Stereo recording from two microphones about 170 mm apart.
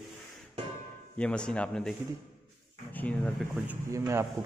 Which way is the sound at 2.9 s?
10° left (ahead or behind).